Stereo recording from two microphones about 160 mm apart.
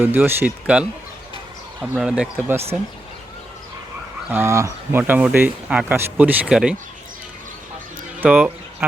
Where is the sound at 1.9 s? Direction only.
5° right (ahead or behind).